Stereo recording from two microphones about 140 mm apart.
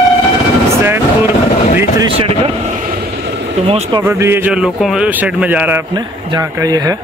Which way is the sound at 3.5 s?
50° right (ahead or behind).